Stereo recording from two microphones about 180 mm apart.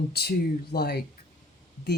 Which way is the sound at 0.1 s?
60° left (ahead or behind).